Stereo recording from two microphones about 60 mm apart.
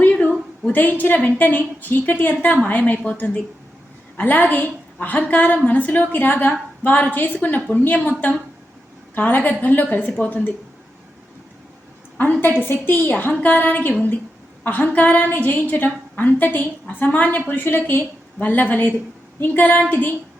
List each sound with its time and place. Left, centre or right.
0.1 s a sound: left
0.7 s a woman's voice: left
12.6 s a woman's voice: left